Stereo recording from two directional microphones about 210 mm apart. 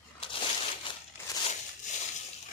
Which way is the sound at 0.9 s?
25° left (ahead or behind).